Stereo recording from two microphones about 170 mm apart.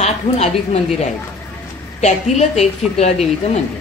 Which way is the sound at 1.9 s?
40° left (ahead or behind).